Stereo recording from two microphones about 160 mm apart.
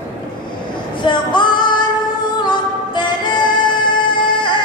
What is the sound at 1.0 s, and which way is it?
Female singing, 30° left (ahead or behind).